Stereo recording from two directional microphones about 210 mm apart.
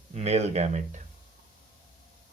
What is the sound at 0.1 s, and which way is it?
Speech, 30° right (ahead or behind).